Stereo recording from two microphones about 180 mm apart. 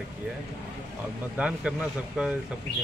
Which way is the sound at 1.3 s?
5° right (ahead or behind).